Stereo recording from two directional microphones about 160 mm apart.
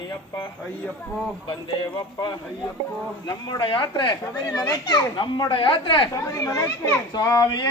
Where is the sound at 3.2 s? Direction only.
30° left (ahead or behind).